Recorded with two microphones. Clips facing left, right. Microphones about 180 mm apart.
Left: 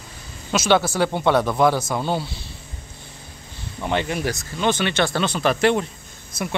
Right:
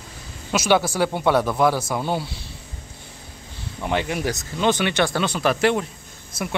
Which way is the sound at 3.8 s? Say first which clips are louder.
Even; 10° right (ahead or behind).